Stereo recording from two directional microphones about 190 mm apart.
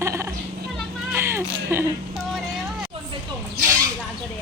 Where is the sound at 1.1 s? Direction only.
15° right (ahead or behind).